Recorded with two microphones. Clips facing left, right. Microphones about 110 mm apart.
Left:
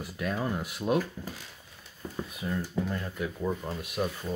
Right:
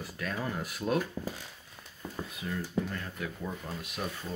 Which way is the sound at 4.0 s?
30° left (ahead or behind).